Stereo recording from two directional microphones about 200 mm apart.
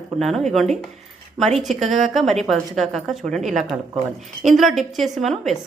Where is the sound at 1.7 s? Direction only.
35° right (ahead or behind).